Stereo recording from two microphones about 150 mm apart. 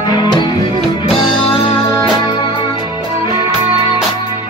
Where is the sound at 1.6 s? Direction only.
35° left (ahead or behind).